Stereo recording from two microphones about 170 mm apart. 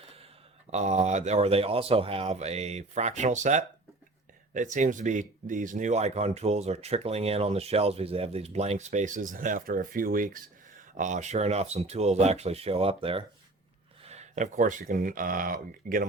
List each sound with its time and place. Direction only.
0.7 s speech: 40° right (ahead or behind)